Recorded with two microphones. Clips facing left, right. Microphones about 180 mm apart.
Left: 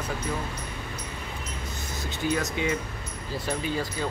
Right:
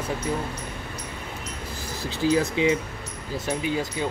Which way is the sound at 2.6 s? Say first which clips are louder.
Right 6 dB; 25° right (ahead or behind).